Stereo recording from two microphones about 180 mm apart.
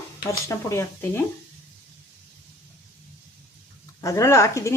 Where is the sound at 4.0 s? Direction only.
15° left (ahead or behind).